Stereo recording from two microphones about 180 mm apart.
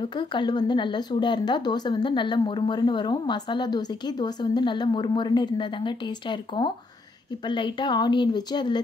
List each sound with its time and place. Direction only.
0.2 s speech: 25° left (ahead or behind)